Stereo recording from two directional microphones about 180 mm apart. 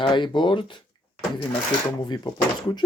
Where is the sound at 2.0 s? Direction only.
25° left (ahead or behind).